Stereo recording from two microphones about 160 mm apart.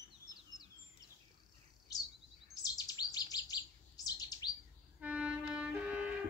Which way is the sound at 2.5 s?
25° left (ahead or behind).